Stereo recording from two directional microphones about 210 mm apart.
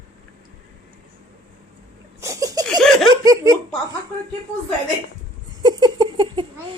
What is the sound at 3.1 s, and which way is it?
Speech, 15° right (ahead or behind).